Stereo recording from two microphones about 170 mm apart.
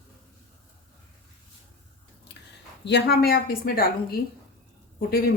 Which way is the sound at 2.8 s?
75° left (ahead or behind).